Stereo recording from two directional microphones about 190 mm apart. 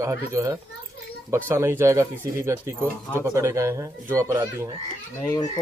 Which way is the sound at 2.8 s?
10° left (ahead or behind).